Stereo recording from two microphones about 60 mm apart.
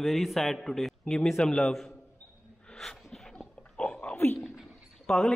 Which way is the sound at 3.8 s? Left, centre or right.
Centre.